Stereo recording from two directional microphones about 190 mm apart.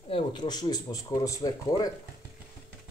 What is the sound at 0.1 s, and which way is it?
Speech, 25° left (ahead or behind).